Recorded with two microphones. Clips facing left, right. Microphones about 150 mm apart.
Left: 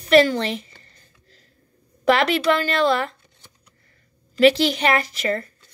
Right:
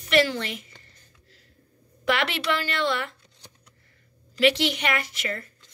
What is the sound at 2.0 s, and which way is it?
Speech, 35° left (ahead or behind).